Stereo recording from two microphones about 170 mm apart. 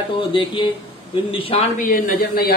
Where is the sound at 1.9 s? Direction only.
65° left (ahead or behind).